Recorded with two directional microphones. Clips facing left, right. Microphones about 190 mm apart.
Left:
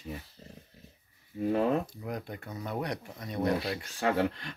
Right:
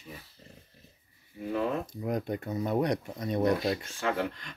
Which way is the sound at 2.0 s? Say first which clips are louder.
Right 6 dB; 20° right (ahead or behind).